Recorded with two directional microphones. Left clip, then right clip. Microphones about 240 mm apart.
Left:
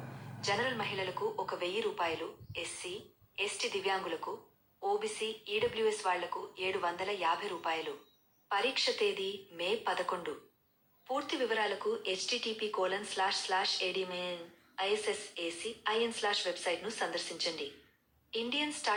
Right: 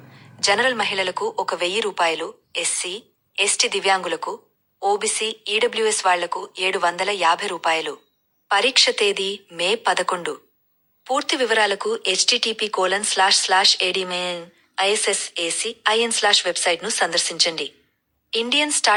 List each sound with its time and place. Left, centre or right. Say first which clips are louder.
0.4 s speech: right 15 dB; right